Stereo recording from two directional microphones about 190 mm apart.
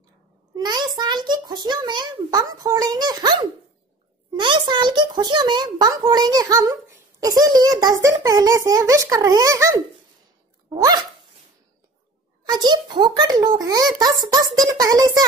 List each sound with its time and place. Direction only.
0.6 s a child's voice: 20° right (ahead or behind)
12.4 s a child's voice: 20° right (ahead or behind)